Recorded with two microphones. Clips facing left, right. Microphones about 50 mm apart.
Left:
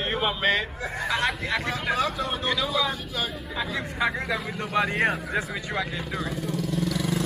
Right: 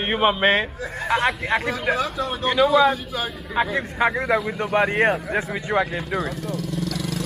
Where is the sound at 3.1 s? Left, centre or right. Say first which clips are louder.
Right 3 dB; centre.